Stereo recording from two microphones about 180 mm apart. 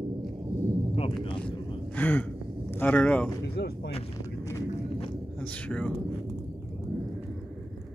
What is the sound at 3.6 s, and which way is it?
Speech, 65° left (ahead or behind).